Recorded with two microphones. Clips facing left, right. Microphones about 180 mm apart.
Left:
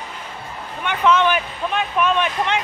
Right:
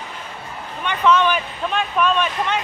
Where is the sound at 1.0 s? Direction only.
15° left (ahead or behind).